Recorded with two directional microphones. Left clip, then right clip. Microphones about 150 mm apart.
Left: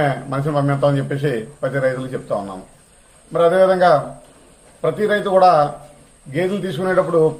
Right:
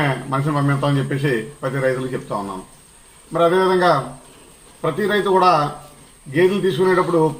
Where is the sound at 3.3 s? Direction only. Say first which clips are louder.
Left 2 dB; 35° left (ahead or behind).